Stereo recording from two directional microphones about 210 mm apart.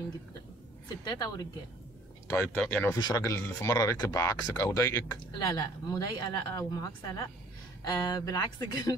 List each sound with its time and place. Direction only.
0.8 s a woman's voice: 20° left (ahead or behind)
2.2 s speech: 10° left (ahead or behind)